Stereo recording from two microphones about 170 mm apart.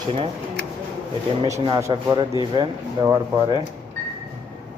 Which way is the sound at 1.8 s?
25° right (ahead or behind).